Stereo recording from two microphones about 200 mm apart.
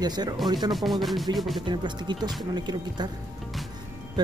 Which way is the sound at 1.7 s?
20° right (ahead or behind).